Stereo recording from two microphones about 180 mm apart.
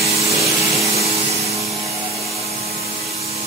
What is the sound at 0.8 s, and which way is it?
Vacuum cleaner, 35° right (ahead or behind).